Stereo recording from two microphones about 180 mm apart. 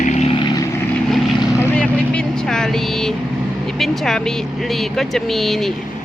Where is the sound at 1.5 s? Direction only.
10° left (ahead or behind).